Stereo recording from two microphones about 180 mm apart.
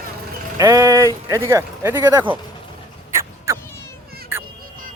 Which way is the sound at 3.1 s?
15° right (ahead or behind).